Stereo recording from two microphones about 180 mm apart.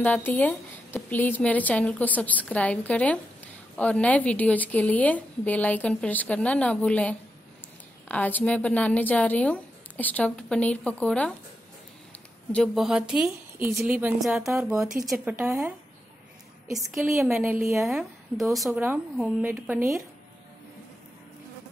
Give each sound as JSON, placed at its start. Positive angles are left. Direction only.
{"t": 0.0, "sound": "a woman's voice", "side_deg": 10}
{"t": 12.5, "sound": "a woman's voice", "side_deg": 0}
{"t": 14.5, "sound": "speech", "side_deg": -15}
{"t": 17.0, "sound": "speech", "side_deg": -15}
{"t": 17.7, "sound": "a woman's voice", "side_deg": 0}
{"t": 18.7, "sound": "speech", "side_deg": -10}
{"t": 19.5, "sound": "a woman's voice", "side_deg": 0}